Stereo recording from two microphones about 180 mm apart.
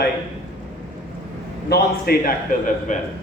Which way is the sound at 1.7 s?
55° left (ahead or behind).